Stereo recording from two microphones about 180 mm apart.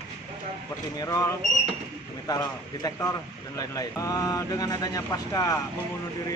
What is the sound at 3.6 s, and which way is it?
Speech, 20° left (ahead or behind).